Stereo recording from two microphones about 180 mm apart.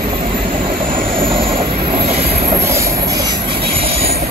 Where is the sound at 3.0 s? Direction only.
20° right (ahead or behind).